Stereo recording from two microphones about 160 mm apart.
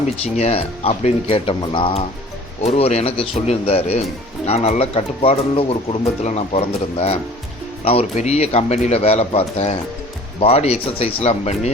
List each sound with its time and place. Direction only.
0.3 s speech: 40° left (ahead or behind)